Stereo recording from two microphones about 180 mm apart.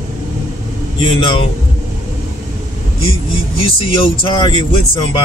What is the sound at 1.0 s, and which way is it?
Speech, 30° left (ahead or behind).